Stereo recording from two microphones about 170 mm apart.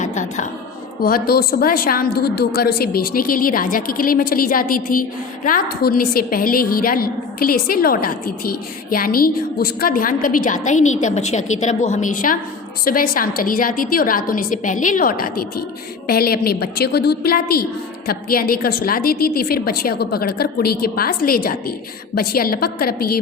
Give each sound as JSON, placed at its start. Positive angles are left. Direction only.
{"t": 0.0, "sound": "music", "side_deg": 45}
{"t": 1.0, "sound": "a woman's voice", "side_deg": 60}